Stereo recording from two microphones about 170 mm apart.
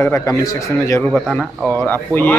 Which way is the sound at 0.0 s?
15° left (ahead or behind).